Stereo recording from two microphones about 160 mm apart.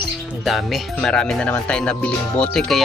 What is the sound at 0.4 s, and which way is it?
Speech, centre (ahead or behind).